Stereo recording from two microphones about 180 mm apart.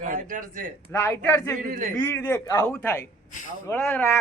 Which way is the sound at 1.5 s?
45° right (ahead or behind).